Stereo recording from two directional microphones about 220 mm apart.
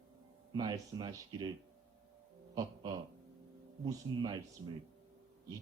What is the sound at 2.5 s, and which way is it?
Dog, 20° right (ahead or behind).